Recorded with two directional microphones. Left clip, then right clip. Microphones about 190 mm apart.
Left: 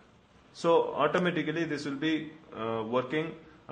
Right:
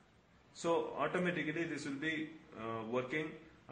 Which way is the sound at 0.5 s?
25° left (ahead or behind).